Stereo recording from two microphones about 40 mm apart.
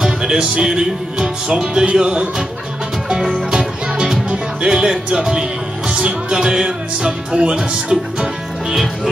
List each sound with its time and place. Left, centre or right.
0.0 s music: centre
3.4 s music: centre
4.3 s speech: centre